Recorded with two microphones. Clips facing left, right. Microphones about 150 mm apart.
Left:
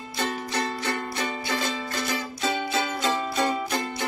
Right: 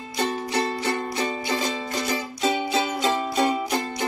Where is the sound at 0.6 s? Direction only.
20° right (ahead or behind).